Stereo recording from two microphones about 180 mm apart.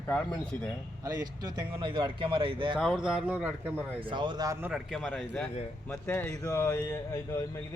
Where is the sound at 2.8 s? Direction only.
Centre (ahead or behind).